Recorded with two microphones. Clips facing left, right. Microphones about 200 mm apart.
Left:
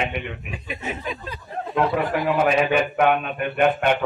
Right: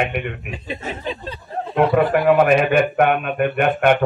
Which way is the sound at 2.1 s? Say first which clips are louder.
Right 6 dB; 60° right (ahead or behind).